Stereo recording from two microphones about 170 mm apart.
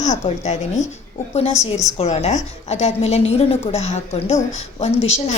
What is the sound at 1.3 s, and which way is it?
A woman's voice, 40° left (ahead or behind).